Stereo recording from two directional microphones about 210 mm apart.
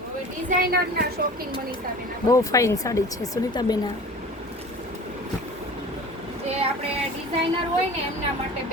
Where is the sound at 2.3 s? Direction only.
15° left (ahead or behind).